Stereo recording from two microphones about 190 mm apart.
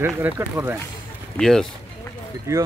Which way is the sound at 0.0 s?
10° right (ahead or behind).